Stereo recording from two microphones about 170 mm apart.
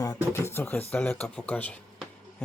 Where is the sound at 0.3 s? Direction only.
15° left (ahead or behind).